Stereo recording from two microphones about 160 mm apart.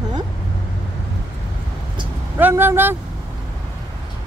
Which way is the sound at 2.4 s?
10° right (ahead or behind).